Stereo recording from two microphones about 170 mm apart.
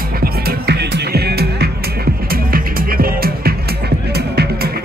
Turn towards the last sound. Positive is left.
turn(degrees=-70)  # may be behind; listen again after turning